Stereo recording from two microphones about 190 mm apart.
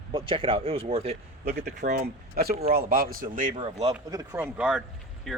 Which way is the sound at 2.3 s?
55° right (ahead or behind).